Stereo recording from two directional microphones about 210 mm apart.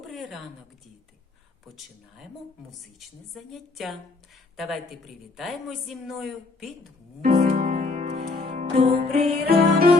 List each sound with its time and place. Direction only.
0.1 s a sound: centre (ahead or behind)
3.3 s a woman's voice: centre (ahead or behind)
7.2 s music: 40° right (ahead or behind)